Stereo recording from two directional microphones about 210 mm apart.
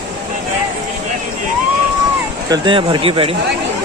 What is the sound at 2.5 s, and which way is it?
Speech, 25° right (ahead or behind).